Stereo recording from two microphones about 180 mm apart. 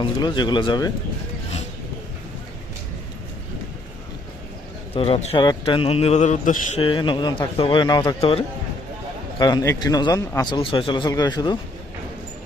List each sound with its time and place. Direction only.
0.0 s a man's voice: 25° left (ahead or behind)
4.9 s a man's voice: 30° left (ahead or behind)
6.7 s a man's voice: 30° left (ahead or behind)
9.4 s a man's voice: 20° left (ahead or behind)